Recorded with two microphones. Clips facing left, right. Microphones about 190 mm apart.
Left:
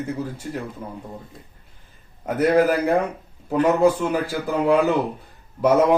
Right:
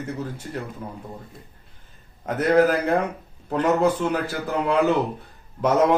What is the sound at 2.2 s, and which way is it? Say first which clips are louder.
A man's voice: left 1 dB; 10° left (ahead or behind).